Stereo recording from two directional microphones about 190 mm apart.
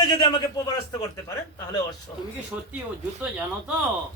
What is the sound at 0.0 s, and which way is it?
A man's voice, 20° left (ahead or behind).